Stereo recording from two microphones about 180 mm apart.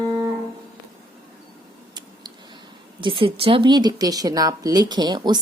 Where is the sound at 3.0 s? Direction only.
30° right (ahead or behind).